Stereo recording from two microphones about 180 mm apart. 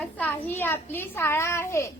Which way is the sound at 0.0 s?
10° left (ahead or behind).